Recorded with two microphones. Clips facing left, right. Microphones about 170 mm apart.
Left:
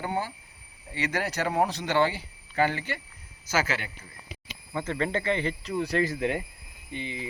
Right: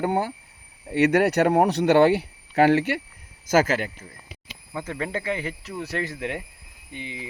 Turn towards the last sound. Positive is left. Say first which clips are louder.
# left 1 dB
turn(degrees=-10)  # may be behind; listen again after turning